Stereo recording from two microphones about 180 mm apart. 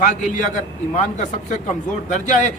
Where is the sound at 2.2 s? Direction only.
45° left (ahead or behind).